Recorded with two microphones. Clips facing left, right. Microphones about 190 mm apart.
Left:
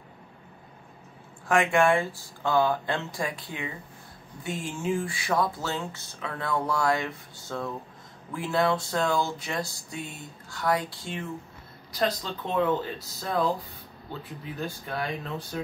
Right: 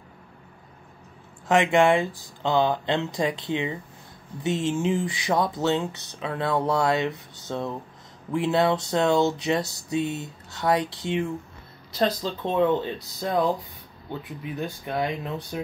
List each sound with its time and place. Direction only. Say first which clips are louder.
1.5 s speech: right 3 dB; 20° right (ahead or behind)